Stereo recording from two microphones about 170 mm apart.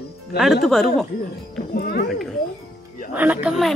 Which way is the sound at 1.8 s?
60° left (ahead or behind).